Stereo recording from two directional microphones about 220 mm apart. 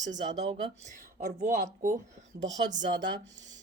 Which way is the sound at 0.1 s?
30° right (ahead or behind).